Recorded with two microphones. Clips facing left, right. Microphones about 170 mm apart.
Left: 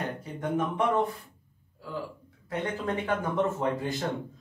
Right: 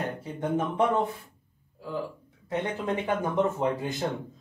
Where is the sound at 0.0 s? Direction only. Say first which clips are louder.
Right 2 dB; 25° right (ahead or behind).